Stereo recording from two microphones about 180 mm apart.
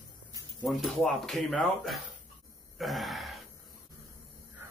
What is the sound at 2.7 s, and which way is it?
Burping, centre (ahead or behind).